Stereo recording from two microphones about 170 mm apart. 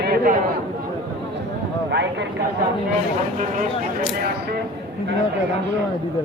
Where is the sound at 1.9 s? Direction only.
90° right.